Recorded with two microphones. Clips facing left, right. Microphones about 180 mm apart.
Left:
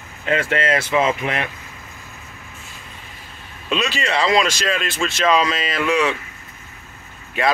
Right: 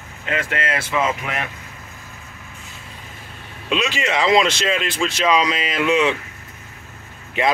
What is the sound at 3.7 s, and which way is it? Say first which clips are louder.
Speech: even; 15° right (ahead or behind).